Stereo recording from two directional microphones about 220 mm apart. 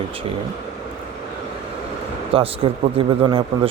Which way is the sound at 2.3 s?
25° right (ahead or behind).